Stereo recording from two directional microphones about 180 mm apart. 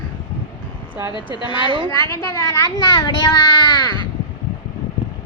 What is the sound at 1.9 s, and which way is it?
A child's voice, 15° left (ahead or behind).